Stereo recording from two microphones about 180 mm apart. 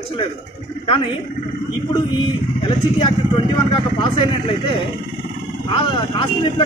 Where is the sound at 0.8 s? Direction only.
30° left (ahead or behind).